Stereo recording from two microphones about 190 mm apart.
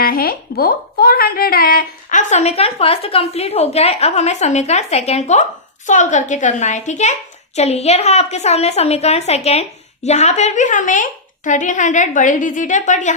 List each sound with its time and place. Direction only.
0.0 s speech: 50° left (ahead or behind)